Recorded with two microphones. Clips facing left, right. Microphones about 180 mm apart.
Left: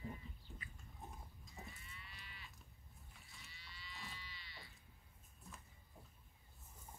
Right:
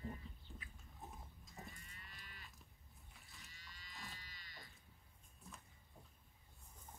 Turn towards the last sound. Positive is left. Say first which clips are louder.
# even
turn(degrees=0)  # may be behind; listen again after turning